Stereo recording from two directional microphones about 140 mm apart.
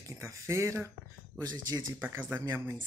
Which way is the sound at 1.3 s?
Centre (ahead or behind).